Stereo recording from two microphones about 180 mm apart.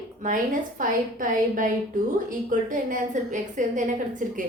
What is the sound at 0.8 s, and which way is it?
A woman's voice, 50° right (ahead or behind).